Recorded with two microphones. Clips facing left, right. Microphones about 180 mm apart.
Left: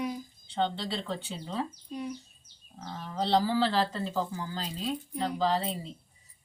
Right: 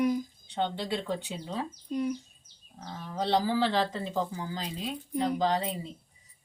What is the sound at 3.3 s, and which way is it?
Speech, 15° right (ahead or behind).